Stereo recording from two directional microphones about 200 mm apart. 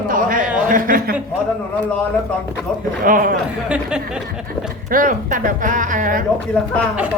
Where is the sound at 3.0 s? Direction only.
45° right (ahead or behind).